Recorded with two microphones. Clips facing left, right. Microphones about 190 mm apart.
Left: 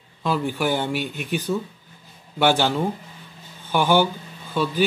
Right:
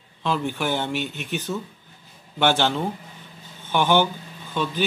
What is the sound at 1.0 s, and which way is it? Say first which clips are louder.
Speech: left 2 dB; 50° left (ahead or behind).